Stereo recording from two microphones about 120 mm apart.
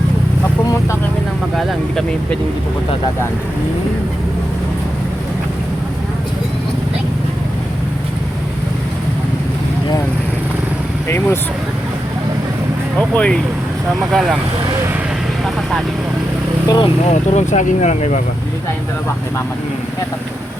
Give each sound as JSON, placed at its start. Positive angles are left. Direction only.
{"t": 1.5, "sound": "speech", "side_deg": 0}
{"t": 13.0, "sound": "speech", "side_deg": 10}
{"t": 14.1, "sound": "speech", "side_deg": -5}
{"t": 16.6, "sound": "speech", "side_deg": 35}
{"t": 17.1, "sound": "speech", "side_deg": 75}